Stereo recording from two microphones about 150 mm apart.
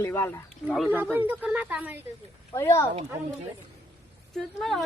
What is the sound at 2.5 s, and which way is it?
Speech, 20° left (ahead or behind).